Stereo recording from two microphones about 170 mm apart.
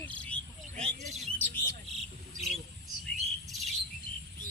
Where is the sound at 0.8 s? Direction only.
45° right (ahead or behind).